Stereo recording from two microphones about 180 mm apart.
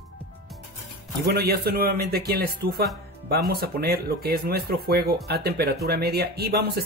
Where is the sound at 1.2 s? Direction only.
60° right (ahead or behind).